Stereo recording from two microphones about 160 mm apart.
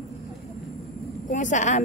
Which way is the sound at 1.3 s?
50° left (ahead or behind).